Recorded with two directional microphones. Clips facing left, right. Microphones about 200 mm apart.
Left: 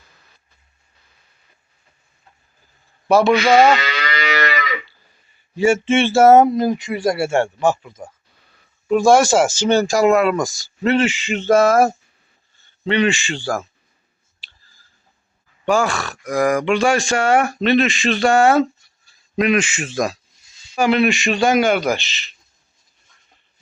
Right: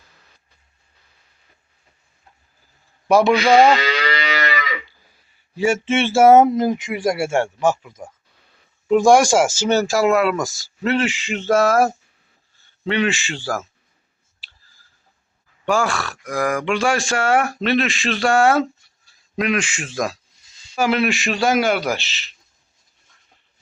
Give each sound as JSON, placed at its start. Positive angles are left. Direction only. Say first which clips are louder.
{"t": 3.1, "sound": "speech", "louder": "left 1 dB", "side_deg": -15}
{"t": 3.3, "sound": "speech", "louder": "even", "side_deg": 0}
{"t": 3.8, "sound": "livestock", "louder": "right 2 dB", "side_deg": -30}
{"t": 5.5, "sound": "speech", "louder": "left 3 dB", "side_deg": -5}
{"t": 8.9, "sound": "speech", "louder": "even", "side_deg": -15}
{"t": 15.6, "sound": "speech", "louder": "left 2 dB", "side_deg": 0}